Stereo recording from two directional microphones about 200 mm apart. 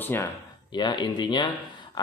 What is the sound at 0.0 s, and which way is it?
Speech, 10° left (ahead or behind).